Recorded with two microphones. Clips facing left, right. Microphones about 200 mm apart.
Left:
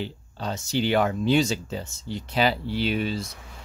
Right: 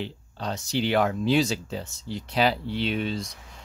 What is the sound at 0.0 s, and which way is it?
Speech, centre (ahead or behind).